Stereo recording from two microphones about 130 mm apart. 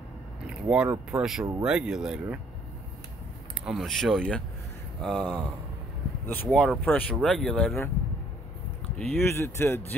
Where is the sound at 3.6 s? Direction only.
Centre (ahead or behind).